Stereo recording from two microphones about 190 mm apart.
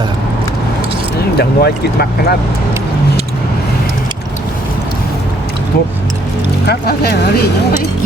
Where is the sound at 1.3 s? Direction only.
55° left (ahead or behind).